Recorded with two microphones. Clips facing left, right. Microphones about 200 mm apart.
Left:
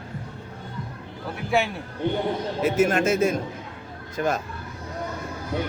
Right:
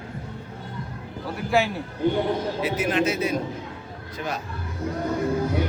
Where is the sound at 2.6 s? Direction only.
45° left (ahead or behind).